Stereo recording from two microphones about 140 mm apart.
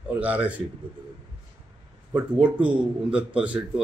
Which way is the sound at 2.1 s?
10° right (ahead or behind).